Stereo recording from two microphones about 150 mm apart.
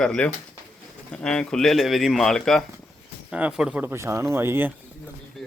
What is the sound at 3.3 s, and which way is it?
Speech, 5° right (ahead or behind).